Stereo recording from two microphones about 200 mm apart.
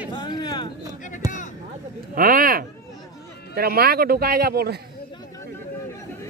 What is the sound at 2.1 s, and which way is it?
Speech, 45° right (ahead or behind).